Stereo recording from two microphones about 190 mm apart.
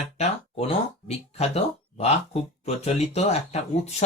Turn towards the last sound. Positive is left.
turn(degrees=35)  # may be behind; listen again after turning